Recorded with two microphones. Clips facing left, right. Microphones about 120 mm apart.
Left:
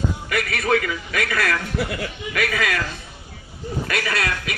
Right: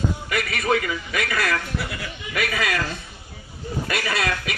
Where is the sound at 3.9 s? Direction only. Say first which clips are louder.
Even; 5° right (ahead or behind).